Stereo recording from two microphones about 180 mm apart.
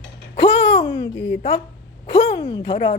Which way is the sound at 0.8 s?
25° left (ahead or behind).